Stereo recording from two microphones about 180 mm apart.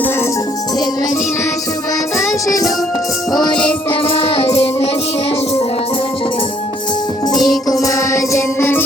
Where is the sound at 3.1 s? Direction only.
Centre (ahead or behind).